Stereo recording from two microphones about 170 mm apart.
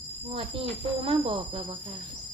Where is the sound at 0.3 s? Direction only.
35° right (ahead or behind).